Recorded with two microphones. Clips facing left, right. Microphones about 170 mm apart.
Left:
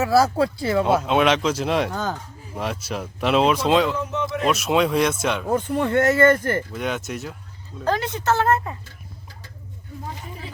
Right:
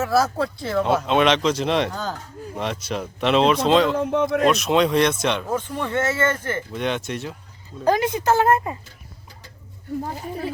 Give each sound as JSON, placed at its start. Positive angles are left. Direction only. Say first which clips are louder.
{"t": 0.6, "sound": "speech", "louder": "right 1 dB", "side_deg": 5}
{"t": 3.9, "sound": "speech", "louder": "right 6 dB", "side_deg": -55}
{"t": 4.4, "sound": "speech", "louder": "left 2 dB", "side_deg": 5}
{"t": 5.5, "sound": "speech", "louder": "left 4 dB", "side_deg": 45}
{"t": 6.7, "sound": "speech", "louder": "right 2 dB", "side_deg": 5}
{"t": 7.9, "sound": "a woman's voice", "louder": "right 3 dB", "side_deg": -10}